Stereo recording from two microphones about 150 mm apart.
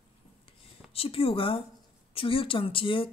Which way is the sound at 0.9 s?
40° left (ahead or behind).